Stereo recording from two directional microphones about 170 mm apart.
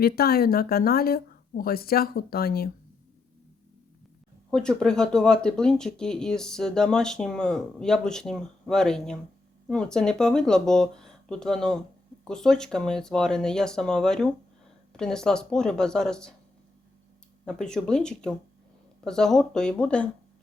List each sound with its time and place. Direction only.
0.0 s speech: 65° left (ahead or behind)
4.5 s speech: 5° left (ahead or behind)
17.4 s speech: 5° left (ahead or behind)